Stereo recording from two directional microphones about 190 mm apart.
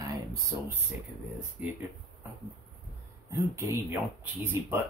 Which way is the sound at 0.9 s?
10° right (ahead or behind).